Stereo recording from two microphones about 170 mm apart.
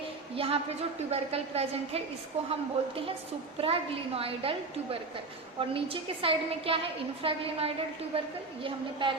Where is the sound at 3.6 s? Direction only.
35° right (ahead or behind).